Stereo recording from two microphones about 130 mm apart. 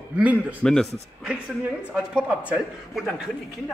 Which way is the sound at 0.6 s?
5° left (ahead or behind).